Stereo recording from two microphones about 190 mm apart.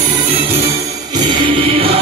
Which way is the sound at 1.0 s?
25° right (ahead or behind).